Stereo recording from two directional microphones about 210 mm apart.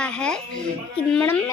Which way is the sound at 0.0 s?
5° left (ahead or behind).